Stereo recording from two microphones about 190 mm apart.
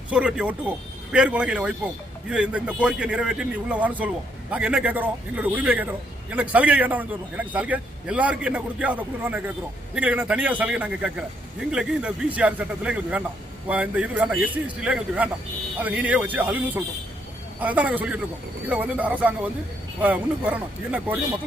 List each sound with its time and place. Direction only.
0.1 s a man's voice: 5° right (ahead or behind)